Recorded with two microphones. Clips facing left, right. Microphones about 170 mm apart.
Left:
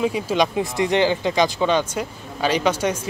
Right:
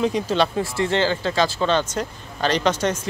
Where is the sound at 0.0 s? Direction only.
10° left (ahead or behind).